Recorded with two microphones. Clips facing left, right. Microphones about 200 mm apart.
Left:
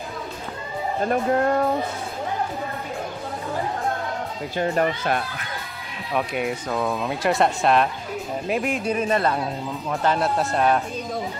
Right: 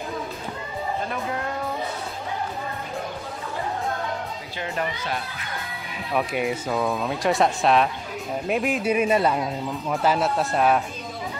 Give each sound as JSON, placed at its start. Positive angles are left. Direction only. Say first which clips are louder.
{"t": 1.0, "sound": "speech", "louder": "left 8 dB", "side_deg": 50}
{"t": 4.6, "sound": "speech", "louder": "left 7 dB", "side_deg": 45}
{"t": 6.1, "sound": "speech", "louder": "even", "side_deg": 0}